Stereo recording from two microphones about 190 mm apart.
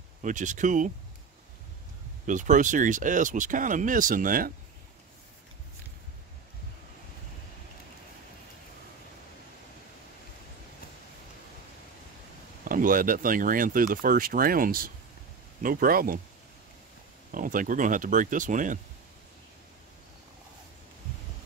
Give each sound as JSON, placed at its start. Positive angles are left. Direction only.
{"t": 0.2, "sound": "speech", "side_deg": -40}
{"t": 2.2, "sound": "speech", "side_deg": -40}
{"t": 12.6, "sound": "speech", "side_deg": -45}
{"t": 17.3, "sound": "speech", "side_deg": -45}